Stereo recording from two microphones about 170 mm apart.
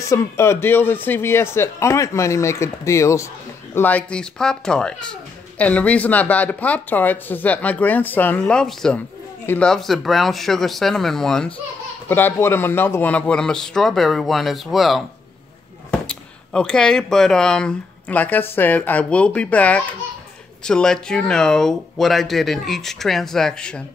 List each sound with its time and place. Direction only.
0.0 s speech: 15° left (ahead or behind)